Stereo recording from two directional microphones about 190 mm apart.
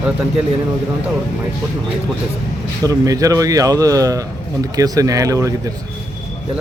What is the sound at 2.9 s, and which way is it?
Speech, 20° right (ahead or behind).